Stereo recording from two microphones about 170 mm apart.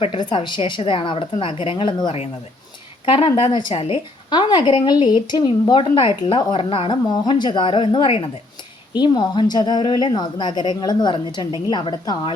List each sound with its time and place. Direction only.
0.0 s a woman's voice: 30° left (ahead or behind)